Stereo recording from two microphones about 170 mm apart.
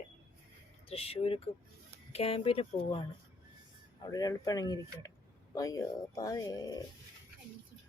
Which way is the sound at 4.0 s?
20° left (ahead or behind).